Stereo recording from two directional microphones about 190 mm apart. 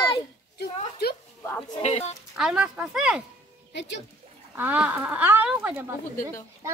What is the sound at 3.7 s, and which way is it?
Speech, 65° left (ahead or behind).